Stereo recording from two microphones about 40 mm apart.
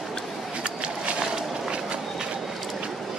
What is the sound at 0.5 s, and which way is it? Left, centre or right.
Train, right.